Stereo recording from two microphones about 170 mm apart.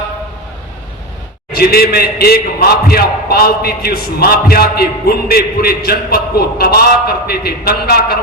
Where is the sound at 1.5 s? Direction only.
65° left (ahead or behind).